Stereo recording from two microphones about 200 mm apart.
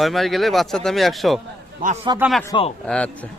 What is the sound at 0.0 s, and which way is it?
A man's voice, centre (ahead or behind).